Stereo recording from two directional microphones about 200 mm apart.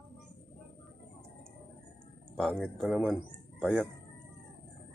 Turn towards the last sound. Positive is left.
turn(degrees=5)  # may be behind; listen again after turning